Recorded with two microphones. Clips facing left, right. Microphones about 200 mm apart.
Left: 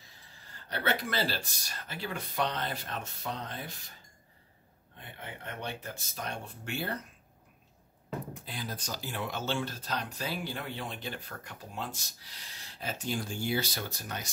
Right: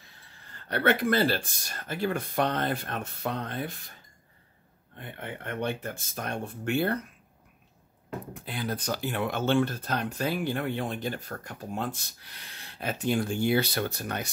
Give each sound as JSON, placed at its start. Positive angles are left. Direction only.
{"t": 0.7, "sound": "speech", "side_deg": -60}
{"t": 4.9, "sound": "speech", "side_deg": -55}
{"t": 8.5, "sound": "speech", "side_deg": -60}